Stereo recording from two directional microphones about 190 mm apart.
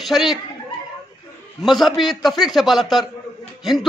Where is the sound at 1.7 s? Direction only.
Centre (ahead or behind).